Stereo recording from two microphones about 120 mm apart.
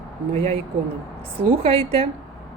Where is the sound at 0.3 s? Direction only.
55° right (ahead or behind).